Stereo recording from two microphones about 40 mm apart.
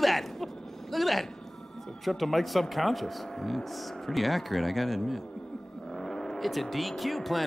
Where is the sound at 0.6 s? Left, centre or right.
Centre.